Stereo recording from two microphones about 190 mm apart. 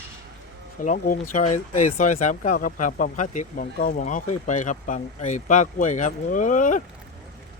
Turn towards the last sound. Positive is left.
turn(degrees=40)  # may be behind; listen again after turning